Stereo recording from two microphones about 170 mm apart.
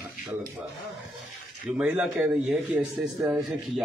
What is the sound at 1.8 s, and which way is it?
A man's voice, 5° right (ahead or behind).